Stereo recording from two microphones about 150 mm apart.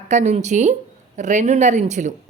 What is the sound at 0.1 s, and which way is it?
A woman's voice, 50° right (ahead or behind).